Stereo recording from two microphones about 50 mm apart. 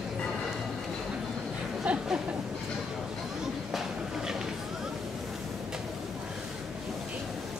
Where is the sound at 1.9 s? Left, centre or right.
Right.